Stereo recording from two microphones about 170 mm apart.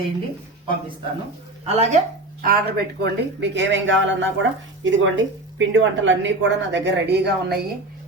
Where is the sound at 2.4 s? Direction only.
65° right (ahead or behind).